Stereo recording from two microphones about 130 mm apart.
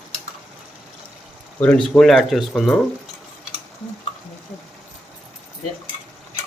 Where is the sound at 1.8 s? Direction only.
5° left (ahead or behind).